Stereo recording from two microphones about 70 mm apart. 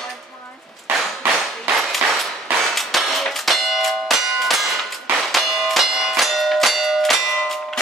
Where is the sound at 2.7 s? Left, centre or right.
Centre.